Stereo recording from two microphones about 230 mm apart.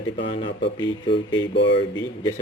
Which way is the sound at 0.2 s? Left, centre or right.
Left.